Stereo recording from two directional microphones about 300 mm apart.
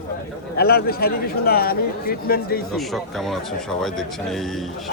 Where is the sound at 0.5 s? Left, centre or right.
Left.